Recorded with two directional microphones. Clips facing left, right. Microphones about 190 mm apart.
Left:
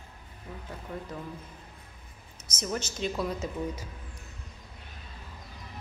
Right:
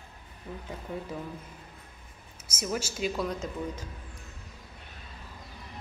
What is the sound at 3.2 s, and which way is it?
Speech, 5° left (ahead or behind).